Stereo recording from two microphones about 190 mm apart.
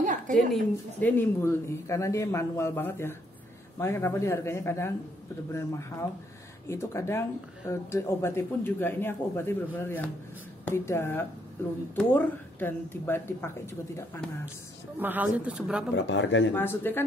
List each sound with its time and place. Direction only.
0.0 s a sound: 40° right (ahead or behind)
1.0 s speech: 10° left (ahead or behind)
15.0 s speech: 10° right (ahead or behind)
15.9 s speech: 70° left (ahead or behind)
16.5 s speech: 10° left (ahead or behind)